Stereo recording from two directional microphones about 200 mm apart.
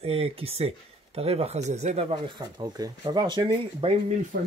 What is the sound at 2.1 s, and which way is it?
Speech, 20° right (ahead or behind).